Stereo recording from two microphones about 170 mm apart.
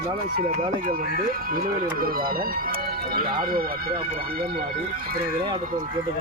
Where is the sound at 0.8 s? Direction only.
60° right (ahead or behind).